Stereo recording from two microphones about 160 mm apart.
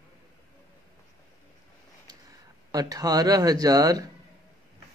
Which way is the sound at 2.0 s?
25° right (ahead or behind).